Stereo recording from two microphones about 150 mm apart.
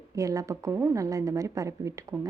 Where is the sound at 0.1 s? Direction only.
20° right (ahead or behind).